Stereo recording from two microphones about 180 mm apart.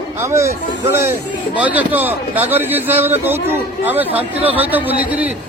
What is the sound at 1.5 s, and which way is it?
A man's voice, 10° right (ahead or behind).